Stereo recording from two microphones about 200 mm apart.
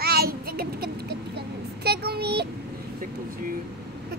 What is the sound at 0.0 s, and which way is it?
Child singing, 50° right (ahead or behind).